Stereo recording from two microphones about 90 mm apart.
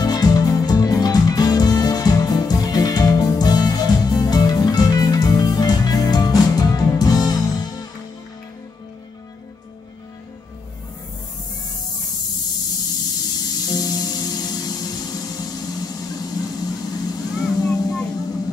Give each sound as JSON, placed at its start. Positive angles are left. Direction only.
{"t": 0.0, "sound": "music", "side_deg": 45}
{"t": 12.9, "sound": "music", "side_deg": 45}